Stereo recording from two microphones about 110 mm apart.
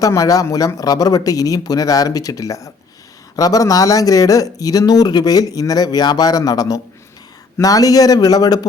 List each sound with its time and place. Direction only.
0.0 s speech: 30° left (ahead or behind)